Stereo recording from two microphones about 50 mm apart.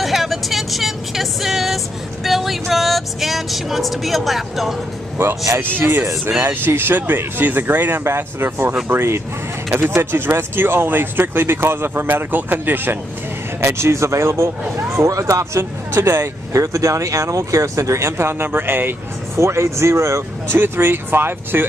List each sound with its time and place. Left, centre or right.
0.0 s vehicle: centre
2.2 s speech: centre
5.2 s speech: right
8.0 s speech: right
13.6 s speech: right
16.1 s speech: right
19.3 s speech: right
20.5 s speech: right